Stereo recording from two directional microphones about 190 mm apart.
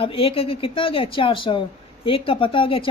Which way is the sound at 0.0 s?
30° left (ahead or behind).